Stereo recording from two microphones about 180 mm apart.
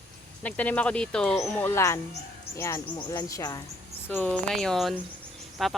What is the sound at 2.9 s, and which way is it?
Speech, 25° left (ahead or behind).